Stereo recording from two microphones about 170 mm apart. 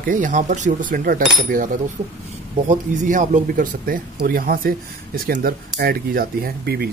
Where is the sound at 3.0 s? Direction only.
50° right (ahead or behind); by 6.9 s 70° right (ahead or behind).